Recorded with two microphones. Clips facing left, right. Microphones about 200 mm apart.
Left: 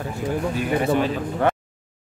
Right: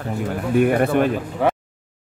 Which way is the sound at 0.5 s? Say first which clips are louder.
Right 7 dB; 60° right (ahead or behind).